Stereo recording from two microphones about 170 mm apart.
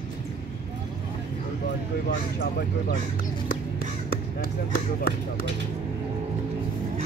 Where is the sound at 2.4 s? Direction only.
70° left (ahead or behind).